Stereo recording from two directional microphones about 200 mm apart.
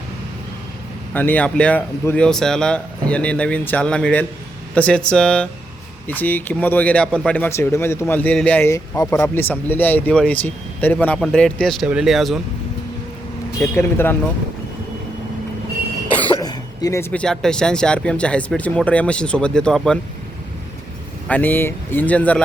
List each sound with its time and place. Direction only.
1.1 s speech: 10° left (ahead or behind)
13.6 s speech: 10° left (ahead or behind)
16.4 s speech: 20° left (ahead or behind); by 20.0 s 5° left (ahead or behind)
21.2 s speech: 10° left (ahead or behind)